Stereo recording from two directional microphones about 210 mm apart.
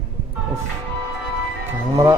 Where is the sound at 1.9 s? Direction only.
15° right (ahead or behind).